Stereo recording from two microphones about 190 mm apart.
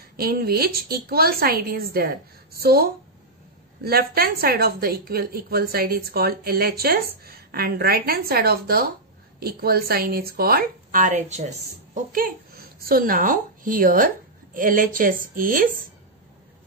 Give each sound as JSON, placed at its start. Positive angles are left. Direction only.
{"t": 0.0, "sound": "a woman's voice", "side_deg": -50}